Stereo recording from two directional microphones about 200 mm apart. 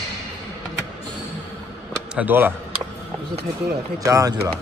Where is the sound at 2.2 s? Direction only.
10° right (ahead or behind).